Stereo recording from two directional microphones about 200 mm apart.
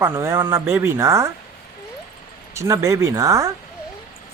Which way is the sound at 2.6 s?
15° right (ahead or behind).